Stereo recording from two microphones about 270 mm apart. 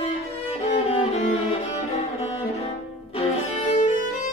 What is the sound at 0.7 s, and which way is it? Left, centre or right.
Music, left.